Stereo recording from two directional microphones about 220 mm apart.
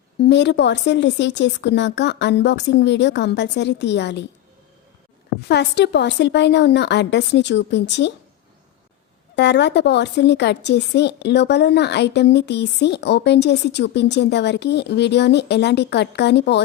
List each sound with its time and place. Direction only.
0.2 s a woman's voice: 50° left (ahead or behind)
5.5 s a woman's voice: 50° left (ahead or behind)
9.3 s a woman's voice: 50° left (ahead or behind)